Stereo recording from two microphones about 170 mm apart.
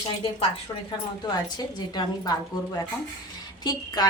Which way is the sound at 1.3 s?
25° left (ahead or behind).